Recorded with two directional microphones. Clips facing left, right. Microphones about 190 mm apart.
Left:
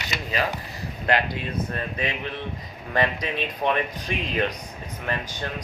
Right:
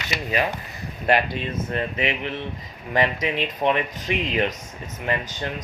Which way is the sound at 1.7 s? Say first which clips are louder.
Right 4 dB; 20° right (ahead or behind).